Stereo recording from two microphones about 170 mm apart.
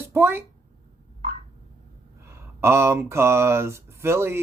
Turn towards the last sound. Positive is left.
turn(degrees=-15)  # may be behind; listen again after turning